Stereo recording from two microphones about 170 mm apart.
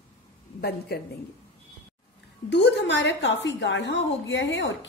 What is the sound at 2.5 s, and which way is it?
A woman's voice, 90° left.